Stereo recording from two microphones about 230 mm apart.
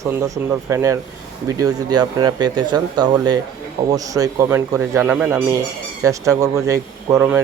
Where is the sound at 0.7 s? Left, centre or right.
Centre.